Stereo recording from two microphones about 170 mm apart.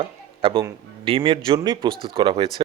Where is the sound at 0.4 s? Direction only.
30° right (ahead or behind).